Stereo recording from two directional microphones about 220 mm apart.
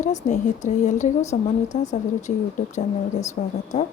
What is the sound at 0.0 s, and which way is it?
A woman's voice, 35° left (ahead or behind).